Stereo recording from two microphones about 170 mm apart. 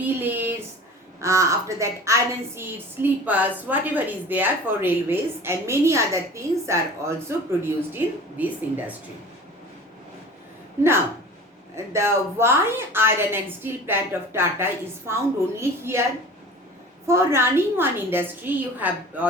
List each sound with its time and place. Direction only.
0.0 s a woman's voice: 10° right (ahead or behind)
11.9 s a woman's voice: 15° right (ahead or behind)
17.1 s a woman's voice: 15° right (ahead or behind)